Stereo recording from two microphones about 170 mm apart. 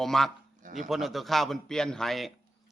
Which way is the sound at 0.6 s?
45° right (ahead or behind).